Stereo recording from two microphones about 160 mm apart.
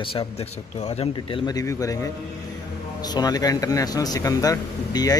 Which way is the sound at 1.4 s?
20° left (ahead or behind).